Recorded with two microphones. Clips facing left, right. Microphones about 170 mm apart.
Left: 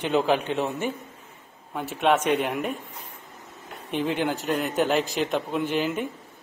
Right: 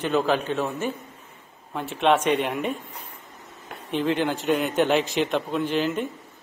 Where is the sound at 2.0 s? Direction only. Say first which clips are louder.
Right 1 dB; 5° left (ahead or behind).